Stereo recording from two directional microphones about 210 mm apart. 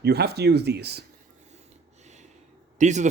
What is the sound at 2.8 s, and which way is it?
Speech, 35° right (ahead or behind).